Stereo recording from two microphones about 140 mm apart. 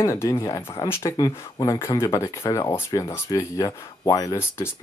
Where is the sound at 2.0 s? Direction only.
20° left (ahead or behind).